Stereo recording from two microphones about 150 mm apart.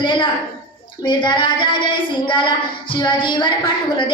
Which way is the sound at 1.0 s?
30° left (ahead or behind).